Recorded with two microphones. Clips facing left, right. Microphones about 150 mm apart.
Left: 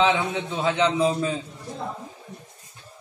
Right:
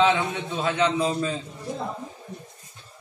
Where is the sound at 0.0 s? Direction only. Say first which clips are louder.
Even; 15° left (ahead or behind).